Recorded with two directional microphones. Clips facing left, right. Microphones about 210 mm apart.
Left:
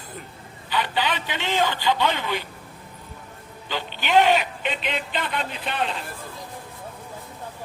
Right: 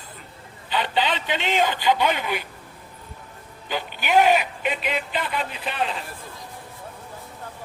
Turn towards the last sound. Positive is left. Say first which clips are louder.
# even
turn(degrees=0)  # may be behind; listen again after turning